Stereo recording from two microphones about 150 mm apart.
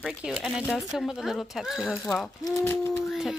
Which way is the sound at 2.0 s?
10° left (ahead or behind).